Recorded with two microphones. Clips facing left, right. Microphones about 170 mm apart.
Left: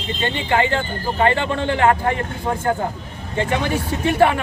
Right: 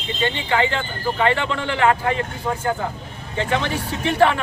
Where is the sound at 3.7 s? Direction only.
15° left (ahead or behind).